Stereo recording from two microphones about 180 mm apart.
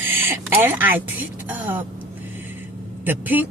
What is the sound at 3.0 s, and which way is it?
Speech, 10° right (ahead or behind).